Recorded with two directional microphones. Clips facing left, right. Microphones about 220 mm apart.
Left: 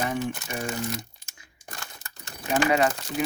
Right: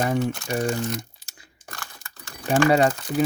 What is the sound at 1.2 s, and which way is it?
Crunch, 35° right (ahead or behind).